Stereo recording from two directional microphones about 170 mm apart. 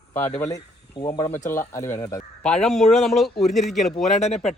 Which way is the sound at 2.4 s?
5° left (ahead or behind).